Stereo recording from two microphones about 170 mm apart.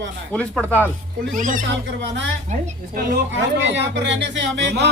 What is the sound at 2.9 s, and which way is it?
Speech, 75° right (ahead or behind).